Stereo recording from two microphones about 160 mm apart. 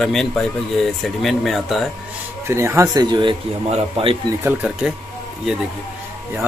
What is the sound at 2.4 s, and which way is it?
Speech, 15° right (ahead or behind).